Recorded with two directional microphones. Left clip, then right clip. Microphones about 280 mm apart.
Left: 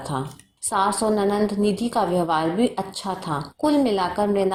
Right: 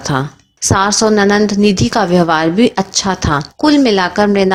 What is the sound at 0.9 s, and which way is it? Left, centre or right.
A woman's voice, right.